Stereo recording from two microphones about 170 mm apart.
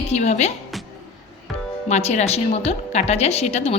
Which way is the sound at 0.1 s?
40° left (ahead or behind).